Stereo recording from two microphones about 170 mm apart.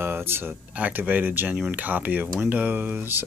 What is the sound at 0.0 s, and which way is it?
Speech, 15° right (ahead or behind).